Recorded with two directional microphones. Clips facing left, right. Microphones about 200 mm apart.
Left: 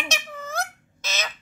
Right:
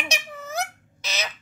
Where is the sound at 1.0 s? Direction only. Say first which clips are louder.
Even; 15° right (ahead or behind).